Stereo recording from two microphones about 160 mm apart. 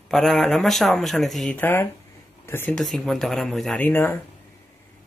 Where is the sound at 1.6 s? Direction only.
15° left (ahead or behind).